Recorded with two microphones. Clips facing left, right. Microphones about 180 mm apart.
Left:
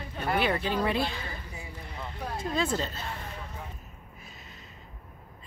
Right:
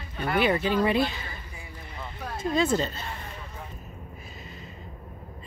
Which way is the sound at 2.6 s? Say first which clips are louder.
Right 5 dB; centre (ahead or behind).